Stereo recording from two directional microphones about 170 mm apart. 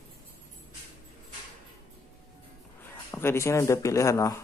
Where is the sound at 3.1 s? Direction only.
15° left (ahead or behind).